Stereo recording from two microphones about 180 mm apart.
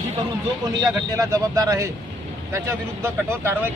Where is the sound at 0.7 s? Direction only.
20° right (ahead or behind).